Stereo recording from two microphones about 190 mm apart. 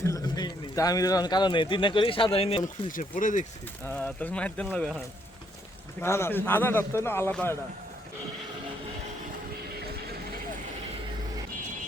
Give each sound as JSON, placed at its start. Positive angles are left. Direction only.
{"t": 0.0, "sound": "speech", "side_deg": 15}
{"t": 2.9, "sound": "speech", "side_deg": 45}
{"t": 3.8, "sound": "speech", "side_deg": 10}
{"t": 6.0, "sound": "speech", "side_deg": 15}